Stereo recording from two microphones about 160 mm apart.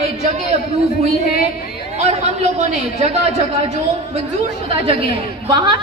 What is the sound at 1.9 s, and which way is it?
A woman's voice, 45° right (ahead or behind).